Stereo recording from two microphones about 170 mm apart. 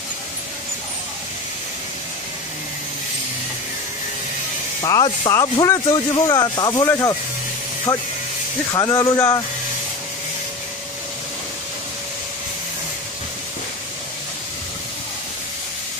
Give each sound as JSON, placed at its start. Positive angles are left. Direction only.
{"t": 4.8, "sound": "speech", "side_deg": 25}
{"t": 8.7, "sound": "speech", "side_deg": 20}